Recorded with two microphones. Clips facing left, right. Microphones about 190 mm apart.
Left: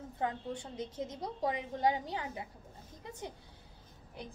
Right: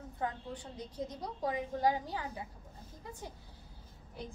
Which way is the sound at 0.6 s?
25° left (ahead or behind).